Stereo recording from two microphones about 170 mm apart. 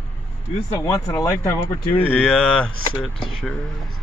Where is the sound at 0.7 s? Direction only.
20° left (ahead or behind).